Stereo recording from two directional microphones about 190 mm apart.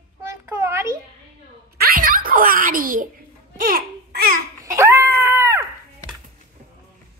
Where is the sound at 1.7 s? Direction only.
55° right (ahead or behind).